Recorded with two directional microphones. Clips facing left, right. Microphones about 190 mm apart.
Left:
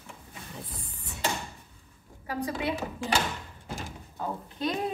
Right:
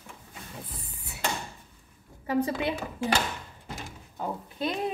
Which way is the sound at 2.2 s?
25° right (ahead or behind).